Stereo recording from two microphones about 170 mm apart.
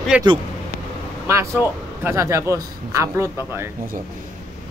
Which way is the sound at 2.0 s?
15° right (ahead or behind).